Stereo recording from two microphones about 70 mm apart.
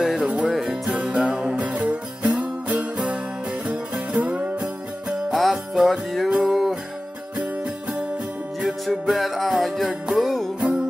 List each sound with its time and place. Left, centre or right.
0.2 s music: centre
5.3 s music: centre
8.5 s music: centre
10.6 s music: centre